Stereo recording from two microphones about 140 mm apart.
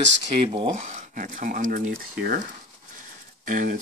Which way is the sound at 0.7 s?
60° right (ahead or behind).